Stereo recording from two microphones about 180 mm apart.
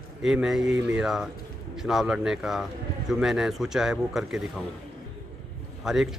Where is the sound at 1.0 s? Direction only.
Centre (ahead or behind).